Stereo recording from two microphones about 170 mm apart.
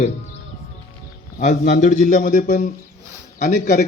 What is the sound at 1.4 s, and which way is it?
A man's voice, 45° left (ahead or behind).